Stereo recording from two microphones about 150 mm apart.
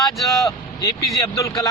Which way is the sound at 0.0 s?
Centre (ahead or behind).